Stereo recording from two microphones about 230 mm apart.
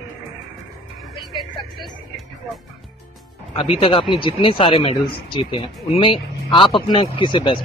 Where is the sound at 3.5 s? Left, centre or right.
Left.